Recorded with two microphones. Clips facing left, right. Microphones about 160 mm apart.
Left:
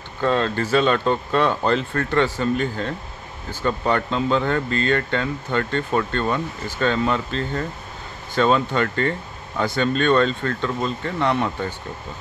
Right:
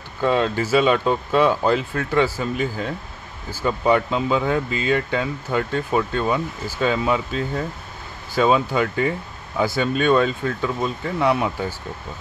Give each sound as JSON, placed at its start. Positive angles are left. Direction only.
{"t": 0.2, "sound": "speech", "side_deg": -10}